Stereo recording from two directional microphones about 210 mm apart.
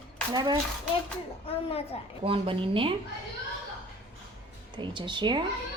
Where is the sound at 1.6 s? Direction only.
30° left (ahead or behind).